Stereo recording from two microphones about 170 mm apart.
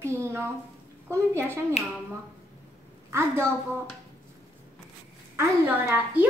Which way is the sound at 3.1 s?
15° right (ahead or behind).